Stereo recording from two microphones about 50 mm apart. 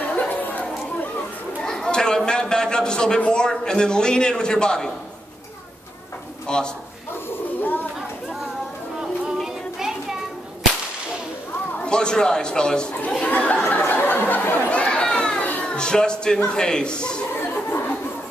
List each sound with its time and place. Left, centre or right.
0.3 s chatter: left
1.6 s a man's voice: centre
6.4 s a man's voice: centre
7.2 s a sound: left
9.4 s music: centre
11.8 s speech: centre
13.2 s chatter: left
13.7 s a sound: left
14.7 s chatter: left
15.6 s a man's voice: centre
17.4 s chuckle: left